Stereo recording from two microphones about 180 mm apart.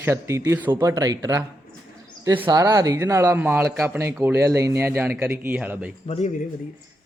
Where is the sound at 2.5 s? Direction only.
20° right (ahead or behind).